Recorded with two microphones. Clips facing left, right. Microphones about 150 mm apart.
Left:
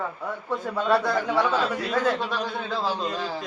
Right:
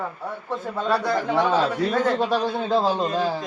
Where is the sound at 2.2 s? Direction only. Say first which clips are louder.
Right 6 dB; 30° right (ahead or behind).